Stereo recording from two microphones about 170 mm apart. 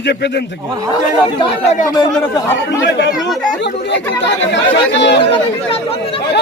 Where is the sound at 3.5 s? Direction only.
90° left.